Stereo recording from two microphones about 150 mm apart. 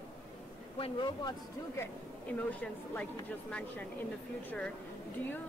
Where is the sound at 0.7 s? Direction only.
35° left (ahead or behind).